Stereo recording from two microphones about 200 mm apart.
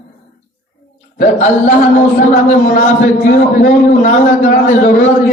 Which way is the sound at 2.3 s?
45° left (ahead or behind).